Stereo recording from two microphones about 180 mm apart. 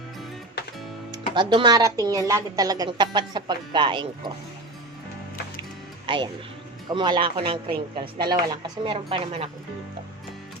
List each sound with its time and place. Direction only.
1.1 s speech: 25° right (ahead or behind)
6.9 s speech: 25° right (ahead or behind)